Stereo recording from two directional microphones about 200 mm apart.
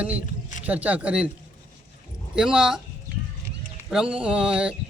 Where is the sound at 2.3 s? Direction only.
5° right (ahead or behind).